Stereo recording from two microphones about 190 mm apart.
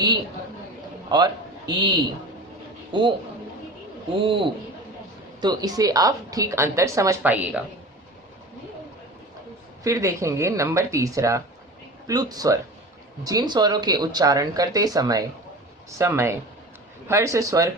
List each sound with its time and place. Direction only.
1.1 s a man's voice: 25° right (ahead or behind); by 7.6 s 10° right (ahead or behind)
9.8 s a woman's voice: 15° right (ahead or behind)